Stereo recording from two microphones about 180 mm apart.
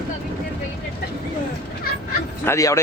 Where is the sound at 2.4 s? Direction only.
15° left (ahead or behind).